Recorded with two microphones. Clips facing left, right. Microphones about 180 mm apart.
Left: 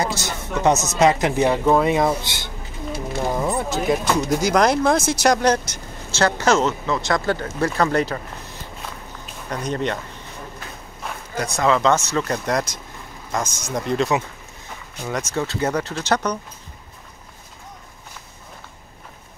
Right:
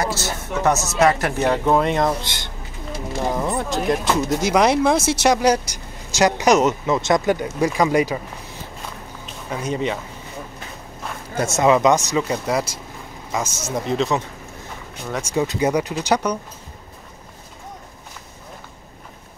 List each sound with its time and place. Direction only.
0.0 s a man's voice: 15° left (ahead or behind)
3.3 s speech: centre (ahead or behind)
9.5 s speech: 5° right (ahead or behind)
11.3 s speech: 25° right (ahead or behind); by 14.2 s centre (ahead or behind)
15.2 s speech: 15° right (ahead or behind)